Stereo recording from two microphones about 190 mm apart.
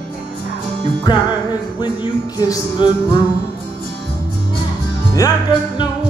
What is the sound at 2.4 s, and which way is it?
Music, 20° left (ahead or behind).